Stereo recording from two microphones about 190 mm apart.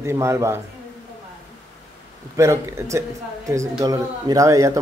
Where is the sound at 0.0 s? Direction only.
15° right (ahead or behind).